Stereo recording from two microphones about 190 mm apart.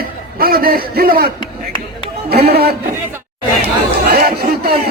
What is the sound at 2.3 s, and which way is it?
Music, 55° right (ahead or behind).